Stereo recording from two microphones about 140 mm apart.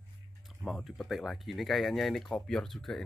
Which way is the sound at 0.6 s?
Centre (ahead or behind).